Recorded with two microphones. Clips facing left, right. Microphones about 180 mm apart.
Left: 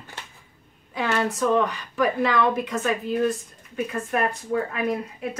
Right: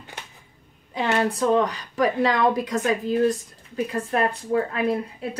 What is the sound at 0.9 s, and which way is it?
Speech, 20° right (ahead or behind).